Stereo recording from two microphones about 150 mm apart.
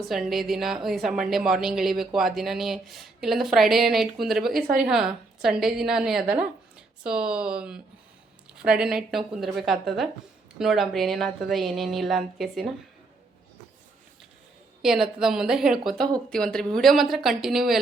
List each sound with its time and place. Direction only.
0.1 s a woman's voice: centre (ahead or behind)
14.8 s a woman's voice: 5° right (ahead or behind)